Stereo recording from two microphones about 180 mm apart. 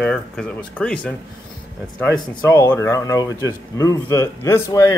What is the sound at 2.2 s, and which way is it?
A man's voice, 15° left (ahead or behind).